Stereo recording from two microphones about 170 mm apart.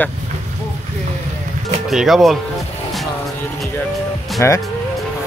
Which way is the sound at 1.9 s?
Centre (ahead or behind).